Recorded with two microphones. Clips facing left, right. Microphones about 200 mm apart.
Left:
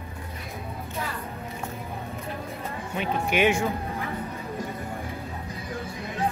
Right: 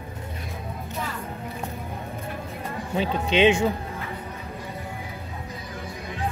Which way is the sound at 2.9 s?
25° right (ahead or behind).